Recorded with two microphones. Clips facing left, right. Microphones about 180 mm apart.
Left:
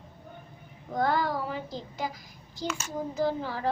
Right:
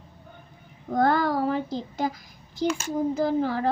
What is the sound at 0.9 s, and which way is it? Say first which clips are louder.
Child singing: right 5 dB; 55° right (ahead or behind).